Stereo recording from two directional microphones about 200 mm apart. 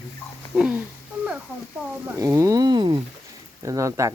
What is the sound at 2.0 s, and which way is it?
Speech, 15° right (ahead or behind).